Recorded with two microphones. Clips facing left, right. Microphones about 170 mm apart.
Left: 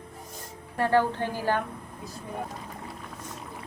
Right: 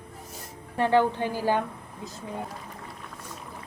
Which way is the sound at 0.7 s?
20° right (ahead or behind).